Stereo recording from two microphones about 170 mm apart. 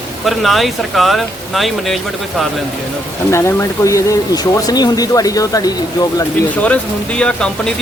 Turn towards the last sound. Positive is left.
turn(degrees=5)  # may be behind; listen again after turning